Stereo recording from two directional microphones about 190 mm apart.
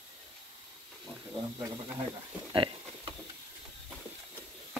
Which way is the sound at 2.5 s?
25° right (ahead or behind).